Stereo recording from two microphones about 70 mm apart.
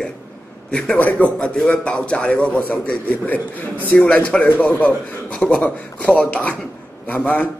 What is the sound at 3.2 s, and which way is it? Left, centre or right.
Speech, left.